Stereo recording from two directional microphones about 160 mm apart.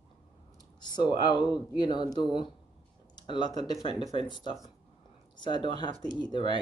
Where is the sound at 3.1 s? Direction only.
30° left (ahead or behind).